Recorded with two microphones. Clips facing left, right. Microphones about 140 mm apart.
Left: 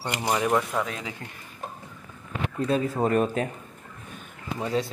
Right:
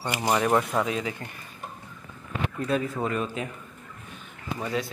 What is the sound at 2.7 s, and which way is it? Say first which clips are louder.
Speech: left 1 dB; 35° left (ahead or behind).